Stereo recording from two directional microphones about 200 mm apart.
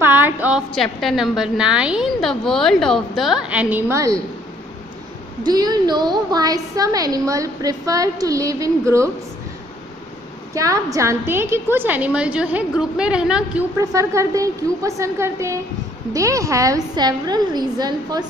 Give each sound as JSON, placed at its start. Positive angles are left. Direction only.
{"t": 0.0, "sound": "a woman's voice", "side_deg": -10}
{"t": 5.4, "sound": "a woman's voice", "side_deg": -20}
{"t": 10.5, "sound": "a woman's voice", "side_deg": -15}